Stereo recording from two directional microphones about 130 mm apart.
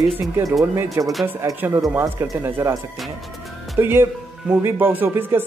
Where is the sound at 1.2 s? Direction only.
15° right (ahead or behind).